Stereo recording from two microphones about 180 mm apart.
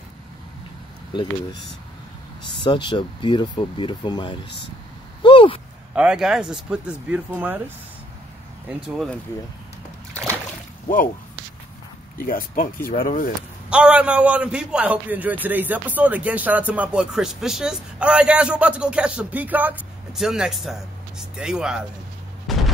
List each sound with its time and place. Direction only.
2.6 s speech: 25° left (ahead or behind)
5.2 s a sound: 30° left (ahead or behind)
5.9 s speech: 5° right (ahead or behind)
8.6 s speech: centre (ahead or behind)
12.2 s speech: 50° left (ahead or behind)
13.7 s a man's voice: 5° right (ahead or behind)
22.5 s artillery fire: centre (ahead or behind)